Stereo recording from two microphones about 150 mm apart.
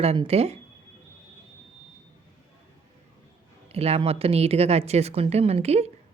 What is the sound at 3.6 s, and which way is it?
Speech, 45° right (ahead or behind).